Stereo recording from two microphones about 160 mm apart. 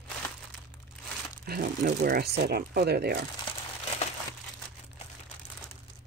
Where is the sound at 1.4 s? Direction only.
70° right (ahead or behind).